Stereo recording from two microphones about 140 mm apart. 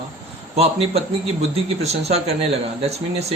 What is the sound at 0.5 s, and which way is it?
Speech, 45° right (ahead or behind).